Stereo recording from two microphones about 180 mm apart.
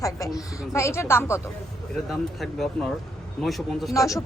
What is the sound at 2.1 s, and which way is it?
Speech, centre (ahead or behind).